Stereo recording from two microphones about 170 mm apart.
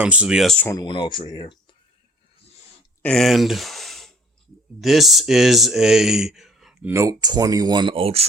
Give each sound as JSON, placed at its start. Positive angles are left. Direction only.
{"t": 0.0, "sound": "speech", "side_deg": -5}
{"t": 0.7, "sound": "speech", "side_deg": 25}
{"t": 3.0, "sound": "speech", "side_deg": 5}
{"t": 6.9, "sound": "speech", "side_deg": -20}